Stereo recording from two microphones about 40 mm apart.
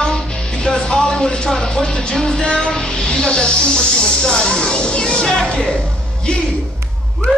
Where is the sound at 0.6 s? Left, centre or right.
Left.